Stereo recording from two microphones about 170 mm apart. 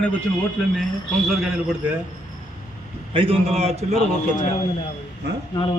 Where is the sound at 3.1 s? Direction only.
35° right (ahead or behind).